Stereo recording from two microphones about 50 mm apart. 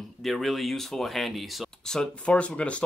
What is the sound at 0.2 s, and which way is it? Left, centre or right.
Speech, centre.